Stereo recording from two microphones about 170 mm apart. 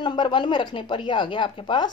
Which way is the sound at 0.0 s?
30° left (ahead or behind).